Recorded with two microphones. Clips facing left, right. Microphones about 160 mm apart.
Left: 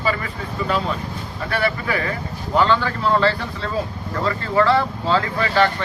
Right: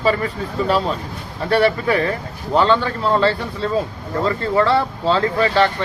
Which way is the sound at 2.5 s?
20° right (ahead or behind).